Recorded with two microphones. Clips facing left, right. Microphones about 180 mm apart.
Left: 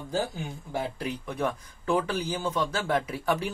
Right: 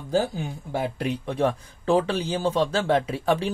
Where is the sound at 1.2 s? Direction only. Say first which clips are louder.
Right 6 dB; 30° right (ahead or behind).